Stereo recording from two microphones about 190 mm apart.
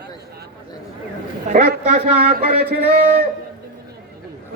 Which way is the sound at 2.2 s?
50° right (ahead or behind).